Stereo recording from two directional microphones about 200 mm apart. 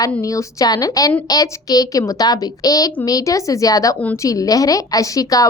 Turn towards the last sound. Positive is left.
turn(degrees=15)  # may be behind; listen again after turning